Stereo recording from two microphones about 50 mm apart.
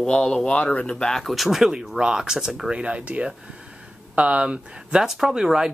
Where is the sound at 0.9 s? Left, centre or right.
Centre.